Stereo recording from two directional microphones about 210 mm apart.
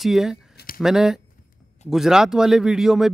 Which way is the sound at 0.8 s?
Centre (ahead or behind).